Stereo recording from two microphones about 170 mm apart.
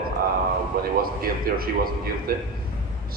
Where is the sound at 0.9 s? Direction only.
60° right (ahead or behind).